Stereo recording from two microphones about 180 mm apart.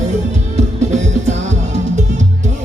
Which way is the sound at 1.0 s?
40° right (ahead or behind).